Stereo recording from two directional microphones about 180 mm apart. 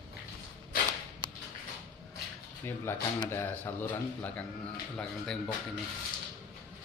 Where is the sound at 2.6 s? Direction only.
10° left (ahead or behind).